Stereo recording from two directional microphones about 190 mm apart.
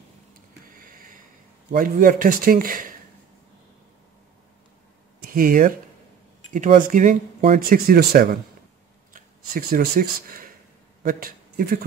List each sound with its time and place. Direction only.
1.7 s speech: 45° right (ahead or behind)
5.2 s speech: 50° right (ahead or behind)